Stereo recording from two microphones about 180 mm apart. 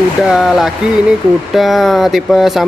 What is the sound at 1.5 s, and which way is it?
Speech, centre (ahead or behind).